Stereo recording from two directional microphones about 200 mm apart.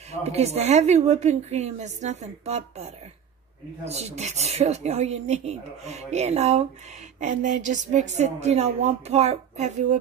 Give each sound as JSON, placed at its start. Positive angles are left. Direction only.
{"t": 0.2, "sound": "speech", "side_deg": -30}